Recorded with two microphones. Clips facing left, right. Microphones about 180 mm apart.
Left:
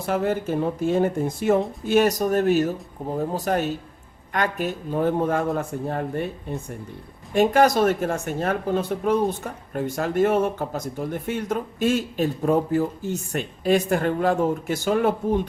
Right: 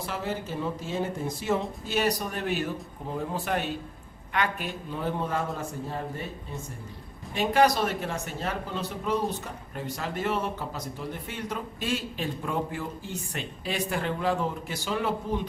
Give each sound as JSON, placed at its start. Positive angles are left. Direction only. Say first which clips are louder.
{"t": 0.0, "sound": "speech", "louder": "left 9 dB", "side_deg": 50}
{"t": 7.3, "sound": "speech", "louder": "left 6 dB", "side_deg": 45}